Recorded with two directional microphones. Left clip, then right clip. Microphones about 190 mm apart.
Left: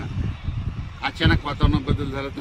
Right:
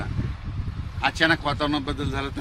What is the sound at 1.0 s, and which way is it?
Speech, 5° right (ahead or behind).